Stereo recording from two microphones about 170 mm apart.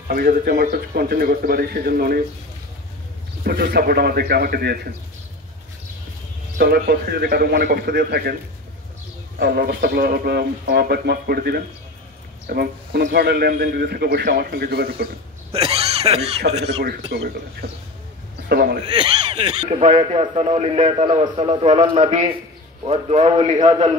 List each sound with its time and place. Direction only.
0.1 s speech: 55° right (ahead or behind)
3.4 s speech: 60° right (ahead or behind)
6.6 s a man's voice: 70° right (ahead or behind)
9.4 s speech: 60° right (ahead or behind)
15.5 s speech: 35° right (ahead or behind)
17.1 s a man's voice: 75° right (ahead or behind)
18.5 s speech: 65° right (ahead or behind)
18.9 s speech: 30° right (ahead or behind)
19.6 s a man's voice: 40° right (ahead or behind)